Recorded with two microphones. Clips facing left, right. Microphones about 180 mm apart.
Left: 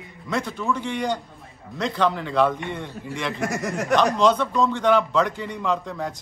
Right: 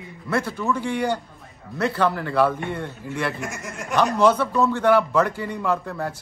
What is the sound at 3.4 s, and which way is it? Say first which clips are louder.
Speech: left 6 dB; 70° left (ahead or behind).